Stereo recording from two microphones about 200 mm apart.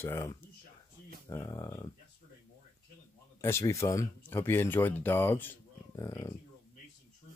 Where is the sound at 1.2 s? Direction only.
15° left (ahead or behind).